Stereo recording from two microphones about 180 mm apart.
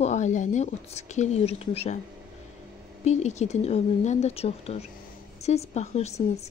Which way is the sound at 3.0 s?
40° left (ahead or behind).